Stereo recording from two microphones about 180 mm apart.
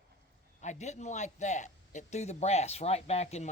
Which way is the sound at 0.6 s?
40° left (ahead or behind).